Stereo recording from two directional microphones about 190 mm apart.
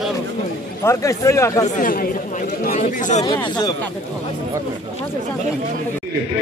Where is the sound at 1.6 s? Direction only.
40° left (ahead or behind).